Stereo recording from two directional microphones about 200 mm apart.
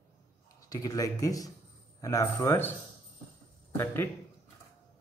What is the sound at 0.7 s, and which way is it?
Speech, 15° left (ahead or behind).